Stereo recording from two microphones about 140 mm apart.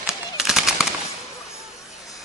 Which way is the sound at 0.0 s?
5° right (ahead or behind).